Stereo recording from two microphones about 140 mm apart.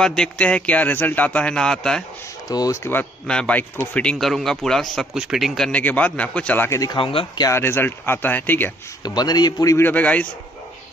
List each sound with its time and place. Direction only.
0.0 s speech: 5° left (ahead or behind)
2.4 s speech: 25° left (ahead or behind)
6.8 s a man's voice: 30° left (ahead or behind)
7.1 s speech: 40° left (ahead or behind)
7.4 s speech: 15° left (ahead or behind)
9.0 s a man's voice: 30° left (ahead or behind)
9.8 s speech: 10° left (ahead or behind)